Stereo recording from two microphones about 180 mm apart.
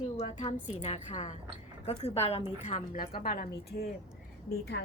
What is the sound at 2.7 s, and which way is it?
A woman's voice, 45° left (ahead or behind).